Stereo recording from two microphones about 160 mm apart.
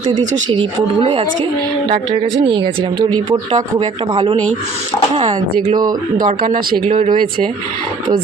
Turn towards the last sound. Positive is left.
turn(degrees=-55)  # may be behind; listen again after turning